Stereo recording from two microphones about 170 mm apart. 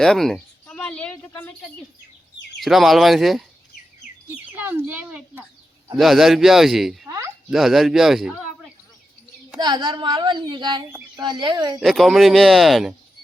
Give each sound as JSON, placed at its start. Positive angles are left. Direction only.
{"t": 0.0, "sound": "a sound", "side_deg": 0}
{"t": 2.6, "sound": "a man's voice", "side_deg": 0}
{"t": 4.5, "sound": "a sound", "side_deg": -10}
{"t": 6.0, "sound": "a man's voice", "side_deg": 0}
{"t": 9.6, "sound": "a woman's voice", "side_deg": -25}
{"t": 11.8, "sound": "a man's voice", "side_deg": 0}